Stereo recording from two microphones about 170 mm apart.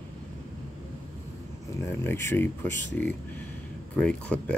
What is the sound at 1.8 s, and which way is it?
Speech, 15° left (ahead or behind).